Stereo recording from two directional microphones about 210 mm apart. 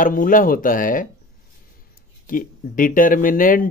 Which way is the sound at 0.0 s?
40° left (ahead or behind).